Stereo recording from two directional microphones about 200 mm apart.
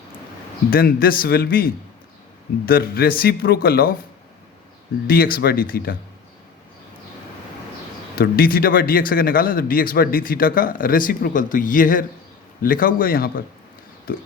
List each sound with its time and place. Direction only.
0.7 s a man's voice: 45° left (ahead or behind)
5.0 s a man's voice: 50° left (ahead or behind)
8.1 s a man's voice: 45° left (ahead or behind)